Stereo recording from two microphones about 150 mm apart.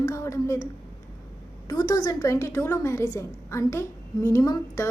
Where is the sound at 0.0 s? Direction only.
20° left (ahead or behind).